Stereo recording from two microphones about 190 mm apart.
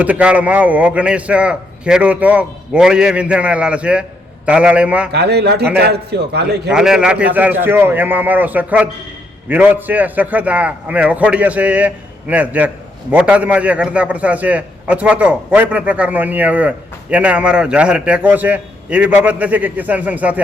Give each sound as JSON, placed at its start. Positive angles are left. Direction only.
{"t": 0.0, "sound": "a man's voice", "side_deg": -5}
{"t": 5.1, "sound": "a man's voice", "side_deg": -60}
{"t": 6.7, "sound": "a man's voice", "side_deg": -5}